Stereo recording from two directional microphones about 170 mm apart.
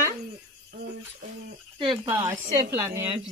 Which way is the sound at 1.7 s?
30° right (ahead or behind).